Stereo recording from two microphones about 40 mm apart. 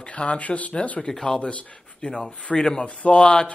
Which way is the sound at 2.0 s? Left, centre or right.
Left.